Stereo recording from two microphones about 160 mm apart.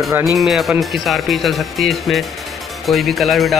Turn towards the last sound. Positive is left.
turn(degrees=0)  # may be behind; listen again after turning